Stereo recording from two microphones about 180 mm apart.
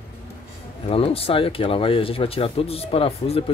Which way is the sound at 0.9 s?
35° left (ahead or behind).